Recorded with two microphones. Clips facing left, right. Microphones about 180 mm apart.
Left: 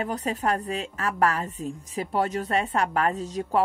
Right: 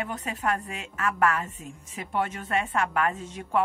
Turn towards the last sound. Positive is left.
turn(degrees=35)  # may be behind; listen again after turning